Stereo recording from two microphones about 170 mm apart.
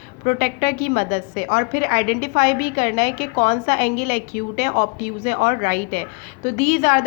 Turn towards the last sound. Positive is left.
turn(degrees=50)  # may be behind; listen again after turning